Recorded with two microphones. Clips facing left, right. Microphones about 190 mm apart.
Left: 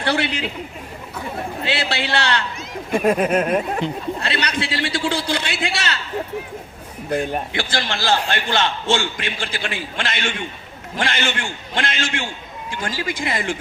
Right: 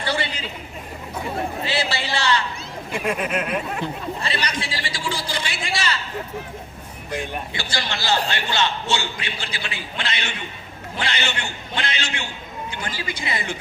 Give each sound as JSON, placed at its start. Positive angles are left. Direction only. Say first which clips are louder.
{"t": 0.0, "sound": "a man's voice", "louder": "left 4 dB", "side_deg": 70}
{"t": 1.6, "sound": "a man's voice", "louder": "left 2 dB", "side_deg": 65}
{"t": 3.0, "sound": "speech", "louder": "left 7 dB", "side_deg": 40}
{"t": 4.2, "sound": "a man's voice", "louder": "left 3 dB", "side_deg": 65}
{"t": 7.2, "sound": "a man's voice", "louder": "left 5 dB", "side_deg": 40}